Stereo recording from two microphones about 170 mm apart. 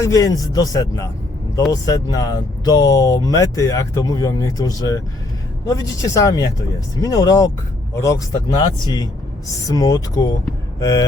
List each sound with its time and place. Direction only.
0.0 s speech: 20° left (ahead or behind)
10.8 s hum: 20° left (ahead or behind)